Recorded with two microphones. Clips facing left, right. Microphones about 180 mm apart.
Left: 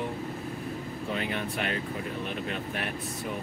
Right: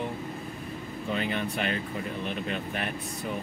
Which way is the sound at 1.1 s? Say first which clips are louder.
Right 3 dB; centre (ahead or behind).